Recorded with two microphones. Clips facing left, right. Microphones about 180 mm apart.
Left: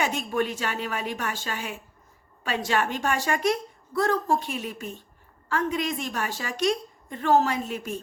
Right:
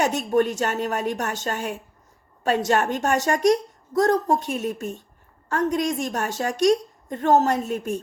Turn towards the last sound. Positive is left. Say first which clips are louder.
# right 5 dB
turn(degrees=-45)  # may be behind; listen again after turning